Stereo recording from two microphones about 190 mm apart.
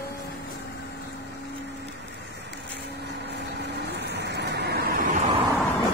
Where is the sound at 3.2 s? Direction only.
60° right (ahead or behind).